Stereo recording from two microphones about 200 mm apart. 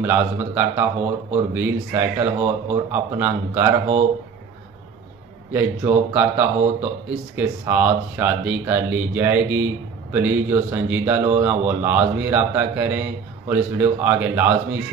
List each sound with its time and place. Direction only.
0.0 s speech: 10° right (ahead or behind)
5.5 s speech: 10° right (ahead or behind)